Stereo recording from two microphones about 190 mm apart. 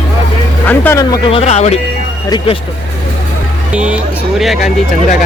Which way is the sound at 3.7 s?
5° right (ahead or behind).